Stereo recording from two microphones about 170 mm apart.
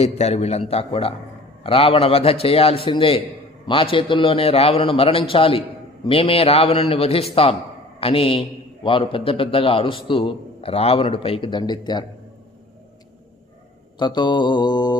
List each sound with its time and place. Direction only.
0.0 s a man's voice: 40° left (ahead or behind)
14.0 s mantra: 25° left (ahead or behind)